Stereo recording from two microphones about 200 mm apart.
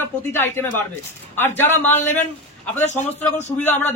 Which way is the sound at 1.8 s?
10° left (ahead or behind).